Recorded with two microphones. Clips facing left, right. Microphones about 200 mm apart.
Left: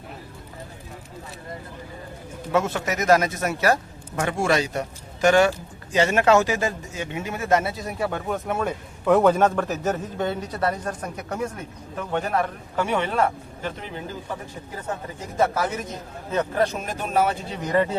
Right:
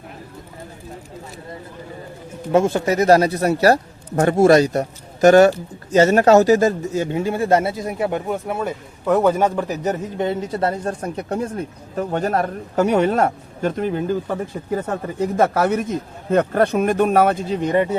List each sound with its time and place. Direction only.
2.5 s speech: 30° right (ahead or behind)
8.3 s a man's voice: 10° right (ahead or behind); by 14.3 s 55° right (ahead or behind)
15.4 s a man's voice: 55° right (ahead or behind)
17.5 s speech: 25° right (ahead or behind)